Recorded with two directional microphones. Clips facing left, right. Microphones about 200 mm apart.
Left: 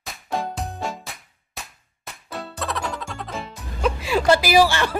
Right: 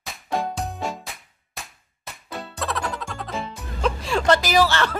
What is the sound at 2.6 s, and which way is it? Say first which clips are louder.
Music: right 1 dB; centre (ahead or behind).